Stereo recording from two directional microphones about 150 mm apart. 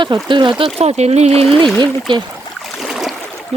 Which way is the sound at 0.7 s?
45° right (ahead or behind).